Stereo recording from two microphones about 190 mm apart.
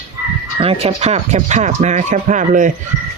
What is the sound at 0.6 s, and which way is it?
Speech, 30° right (ahead or behind).